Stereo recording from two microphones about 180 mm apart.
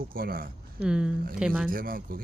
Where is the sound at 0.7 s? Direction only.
5° right (ahead or behind).